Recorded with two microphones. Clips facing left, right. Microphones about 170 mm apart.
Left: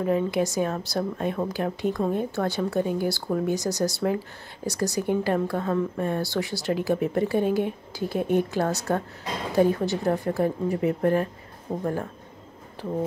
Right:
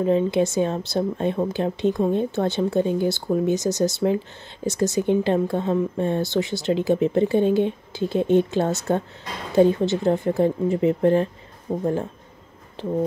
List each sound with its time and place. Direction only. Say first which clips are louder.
0.0 s speech: right 4 dB; 25° right (ahead or behind)